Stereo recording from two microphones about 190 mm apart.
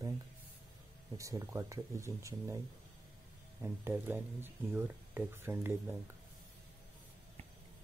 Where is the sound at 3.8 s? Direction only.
10° right (ahead or behind).